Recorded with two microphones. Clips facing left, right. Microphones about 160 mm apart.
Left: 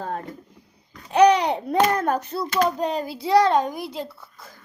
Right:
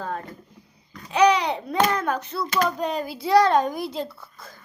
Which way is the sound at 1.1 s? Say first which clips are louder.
Left 3 dB; 50° left (ahead or behind).